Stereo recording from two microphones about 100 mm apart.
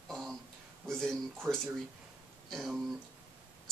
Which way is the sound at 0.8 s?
5° left (ahead or behind).